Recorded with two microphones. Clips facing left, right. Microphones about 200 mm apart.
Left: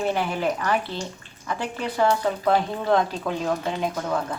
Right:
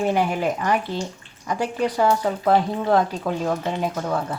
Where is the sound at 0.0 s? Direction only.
15° right (ahead or behind).